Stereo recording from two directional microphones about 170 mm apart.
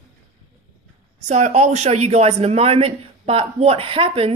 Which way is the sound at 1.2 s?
40° right (ahead or behind).